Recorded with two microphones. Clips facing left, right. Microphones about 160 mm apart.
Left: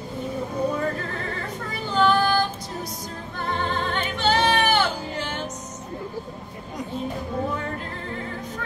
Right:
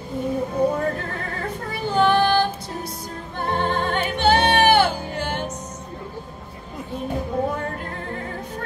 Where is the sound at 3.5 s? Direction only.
50° right (ahead or behind).